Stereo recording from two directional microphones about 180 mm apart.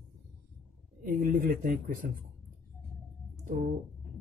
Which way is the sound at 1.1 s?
50° right (ahead or behind).